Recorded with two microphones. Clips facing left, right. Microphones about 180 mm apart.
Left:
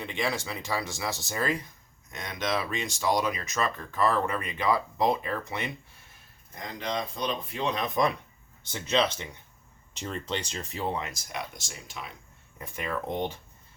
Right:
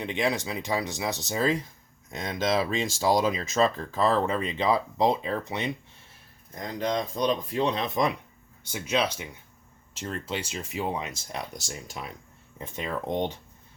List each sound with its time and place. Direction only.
0.0 s speech: 20° right (ahead or behind)
6.7 s speech: 45° right (ahead or behind)
8.6 s speech: 10° right (ahead or behind)
11.2 s speech: 35° right (ahead or behind)
12.5 s speech: 25° right (ahead or behind)